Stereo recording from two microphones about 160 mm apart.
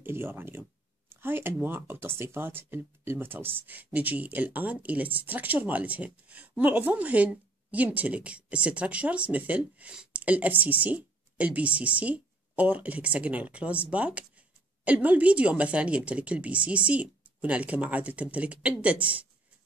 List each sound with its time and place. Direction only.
0.0 s speech: 15° right (ahead or behind)